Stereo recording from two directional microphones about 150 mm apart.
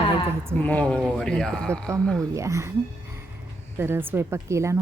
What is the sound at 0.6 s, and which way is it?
Speech, 10° left (ahead or behind).